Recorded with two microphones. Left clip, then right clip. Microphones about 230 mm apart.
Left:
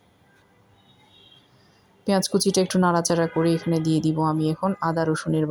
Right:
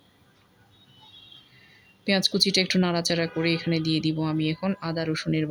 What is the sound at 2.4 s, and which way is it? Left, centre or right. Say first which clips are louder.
Speech: left 1 dB; centre.